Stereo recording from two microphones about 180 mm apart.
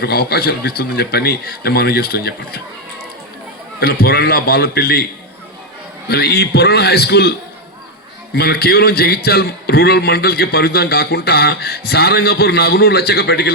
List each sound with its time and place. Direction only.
0.0 s a man's voice: 60° left (ahead or behind)
3.8 s a man's voice: 55° left (ahead or behind)
6.1 s a man's voice: 60° left (ahead or behind)
8.4 s a man's voice: 60° left (ahead or behind)